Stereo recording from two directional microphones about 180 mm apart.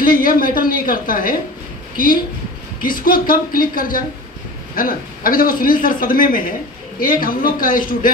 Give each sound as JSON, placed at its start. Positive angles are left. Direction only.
{"t": 0.0, "sound": "a man's voice", "side_deg": 50}
{"t": 2.8, "sound": "a man's voice", "side_deg": 50}